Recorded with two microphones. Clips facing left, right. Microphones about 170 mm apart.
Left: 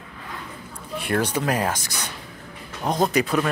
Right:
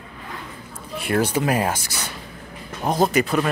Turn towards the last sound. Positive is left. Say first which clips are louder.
# right 2 dB
turn(degrees=0)  # may be behind; listen again after turning